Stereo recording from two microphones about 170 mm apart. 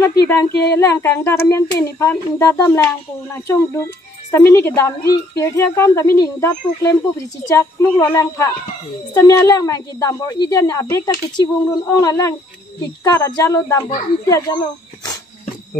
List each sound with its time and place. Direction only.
0.5 s speech: 75° left (ahead or behind)
0.7 s a woman's voice: 15° left (ahead or behind)